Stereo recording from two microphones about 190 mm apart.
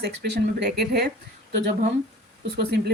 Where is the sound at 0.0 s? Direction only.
60° right (ahead or behind).